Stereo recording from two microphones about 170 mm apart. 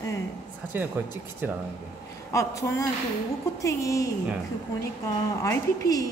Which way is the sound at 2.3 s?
20° left (ahead or behind).